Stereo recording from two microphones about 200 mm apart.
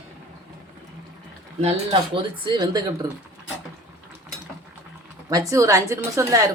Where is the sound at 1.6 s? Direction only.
30° right (ahead or behind).